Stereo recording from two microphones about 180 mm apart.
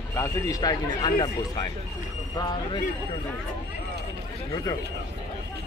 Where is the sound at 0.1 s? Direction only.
20° left (ahead or behind).